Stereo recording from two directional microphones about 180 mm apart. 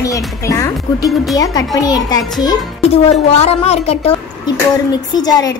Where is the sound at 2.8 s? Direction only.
35° left (ahead or behind).